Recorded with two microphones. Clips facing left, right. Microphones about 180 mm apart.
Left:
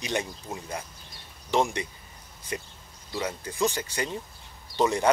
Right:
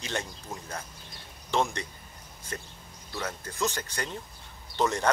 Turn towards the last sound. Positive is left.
turn(degrees=15)  # may be behind; listen again after turning